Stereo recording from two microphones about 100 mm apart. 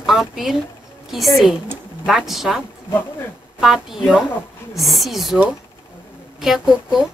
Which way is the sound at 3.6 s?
5° right (ahead or behind).